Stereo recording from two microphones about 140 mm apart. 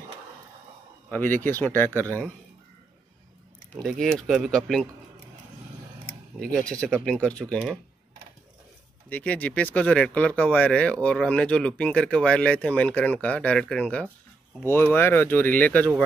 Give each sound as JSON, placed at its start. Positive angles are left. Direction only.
{"t": 1.1, "sound": "speech", "side_deg": 15}
{"t": 3.7, "sound": "speech", "side_deg": 0}
{"t": 6.7, "sound": "speech", "side_deg": 5}
{"t": 9.1, "sound": "speech", "side_deg": 10}